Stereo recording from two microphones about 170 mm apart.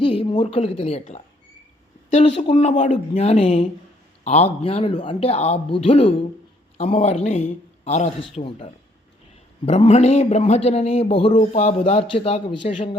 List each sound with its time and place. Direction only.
0.0 s a woman's voice: 30° left (ahead or behind)